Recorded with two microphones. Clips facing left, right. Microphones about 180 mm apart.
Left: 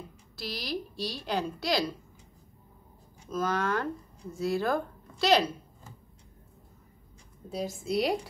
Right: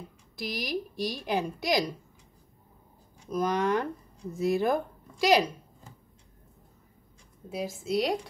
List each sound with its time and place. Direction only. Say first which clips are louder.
0.4 s a woman's voice: right 3 dB; 15° right (ahead or behind)
3.3 s speech: right 3 dB; 15° right (ahead or behind)
7.4 s a woman's voice: even; 5° right (ahead or behind)